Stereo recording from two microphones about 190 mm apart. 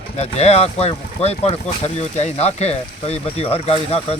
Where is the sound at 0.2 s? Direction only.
35° left (ahead or behind).